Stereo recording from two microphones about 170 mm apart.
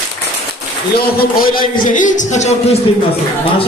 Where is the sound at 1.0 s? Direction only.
60° left (ahead or behind); by 2.7 s 40° left (ahead or behind).